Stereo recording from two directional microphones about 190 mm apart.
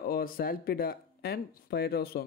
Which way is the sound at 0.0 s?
50° left (ahead or behind).